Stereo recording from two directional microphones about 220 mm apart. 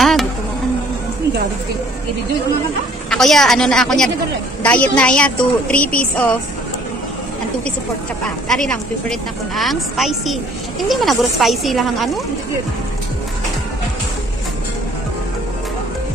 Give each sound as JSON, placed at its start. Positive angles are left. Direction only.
{"t": 0.0, "sound": "insect", "side_deg": 0}
{"t": 3.1, "sound": "a woman's voice", "side_deg": 0}
{"t": 8.5, "sound": "a woman's voice", "side_deg": 5}